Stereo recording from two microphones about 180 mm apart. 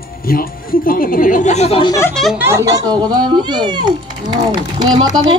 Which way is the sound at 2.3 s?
15° right (ahead or behind).